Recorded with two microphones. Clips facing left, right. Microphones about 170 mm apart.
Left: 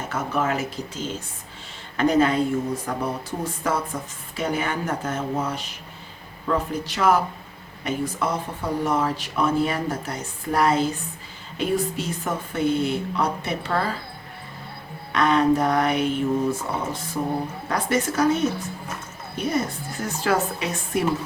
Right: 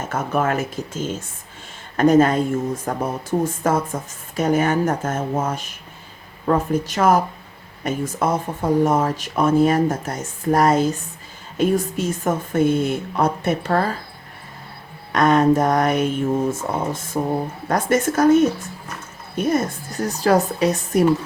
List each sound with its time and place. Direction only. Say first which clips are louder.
0.1 s speech: right 3 dB; 50° right (ahead or behind)
15.1 s a woman's voice: right 4 dB; 45° right (ahead or behind)